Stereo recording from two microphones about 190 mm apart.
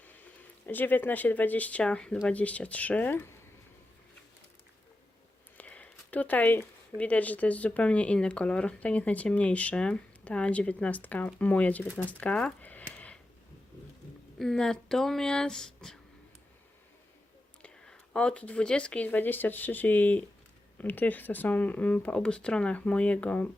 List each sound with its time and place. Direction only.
0.0 s speech: 10° left (ahead or behind)
5.5 s speech: 5° left (ahead or behind)
14.3 s speech: 5° left (ahead or behind)
17.6 s speech: 5° left (ahead or behind)